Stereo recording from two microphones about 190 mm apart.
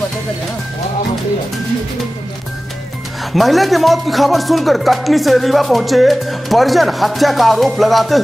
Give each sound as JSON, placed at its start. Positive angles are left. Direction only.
{"t": 3.3, "sound": "speech", "side_deg": 0}